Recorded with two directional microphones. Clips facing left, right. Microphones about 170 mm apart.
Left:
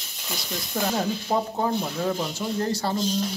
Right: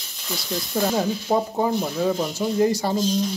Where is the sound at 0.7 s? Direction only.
5° right (ahead or behind).